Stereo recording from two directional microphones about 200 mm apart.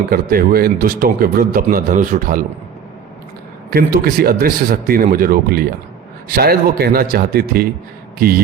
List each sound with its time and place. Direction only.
0.1 s speech: 50° right (ahead or behind)
3.7 s speech: 50° right (ahead or behind)